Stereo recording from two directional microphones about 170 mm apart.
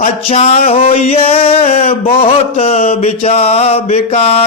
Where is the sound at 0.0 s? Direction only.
40° left (ahead or behind).